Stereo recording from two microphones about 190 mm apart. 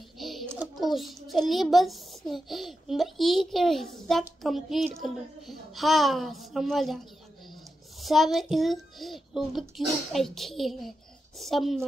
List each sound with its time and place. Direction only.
0.2 s a sound: centre (ahead or behind)
0.5 s a child's voice: 5° right (ahead or behind)
8.0 s a child's voice: centre (ahead or behind)